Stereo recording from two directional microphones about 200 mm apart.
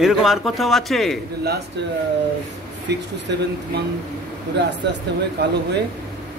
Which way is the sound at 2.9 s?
55° right (ahead or behind).